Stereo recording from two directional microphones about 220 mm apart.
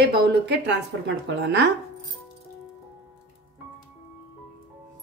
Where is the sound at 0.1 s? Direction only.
50° right (ahead or behind).